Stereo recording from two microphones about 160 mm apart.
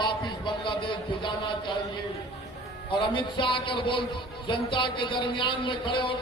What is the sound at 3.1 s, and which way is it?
Speech, 30° left (ahead or behind).